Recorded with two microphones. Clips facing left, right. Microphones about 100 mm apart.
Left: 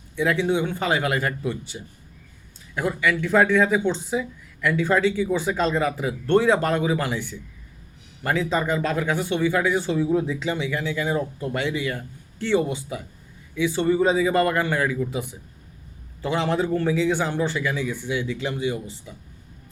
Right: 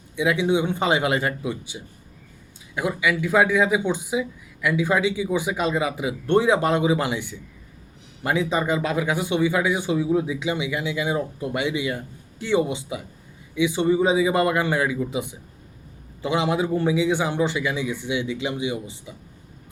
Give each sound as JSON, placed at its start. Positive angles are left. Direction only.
{"t": 0.2, "sound": "speech", "side_deg": -15}